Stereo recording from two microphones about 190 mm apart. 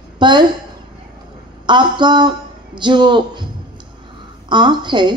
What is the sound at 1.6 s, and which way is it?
A woman's voice, 25° right (ahead or behind).